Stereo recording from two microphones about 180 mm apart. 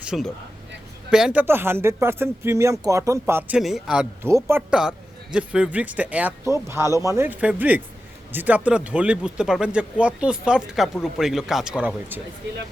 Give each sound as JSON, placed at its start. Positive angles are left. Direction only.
{"t": 0.0, "sound": "speech", "side_deg": -5}